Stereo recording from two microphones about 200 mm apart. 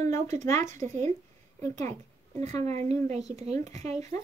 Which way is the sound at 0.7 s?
40° right (ahead or behind).